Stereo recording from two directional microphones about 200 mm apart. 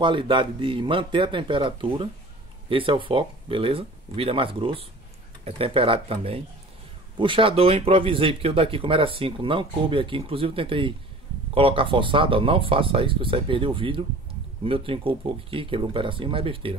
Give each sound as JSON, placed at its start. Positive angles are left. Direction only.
{"t": 0.0, "sound": "speech", "side_deg": -25}